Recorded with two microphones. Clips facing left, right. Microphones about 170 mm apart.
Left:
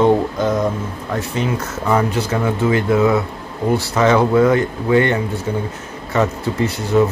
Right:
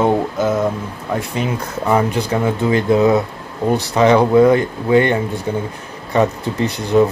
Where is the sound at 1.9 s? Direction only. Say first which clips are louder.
Right 1 dB; 15° right (ahead or behind).